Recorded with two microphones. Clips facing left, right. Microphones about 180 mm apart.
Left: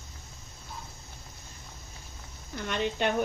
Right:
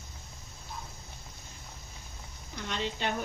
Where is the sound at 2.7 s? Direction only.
55° left (ahead or behind).